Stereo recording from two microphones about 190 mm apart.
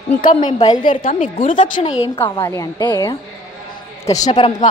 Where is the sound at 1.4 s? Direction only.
45° left (ahead or behind).